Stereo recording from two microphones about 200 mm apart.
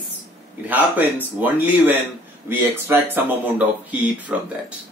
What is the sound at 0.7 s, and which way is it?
Speech, 10° right (ahead or behind).